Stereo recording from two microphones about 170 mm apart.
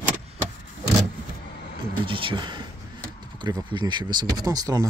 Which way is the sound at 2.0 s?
30° right (ahead or behind).